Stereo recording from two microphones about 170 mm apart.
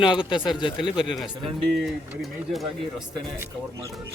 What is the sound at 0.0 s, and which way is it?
Speech, 30° left (ahead or behind).